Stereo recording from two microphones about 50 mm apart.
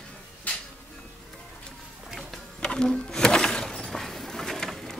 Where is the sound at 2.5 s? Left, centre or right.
Centre.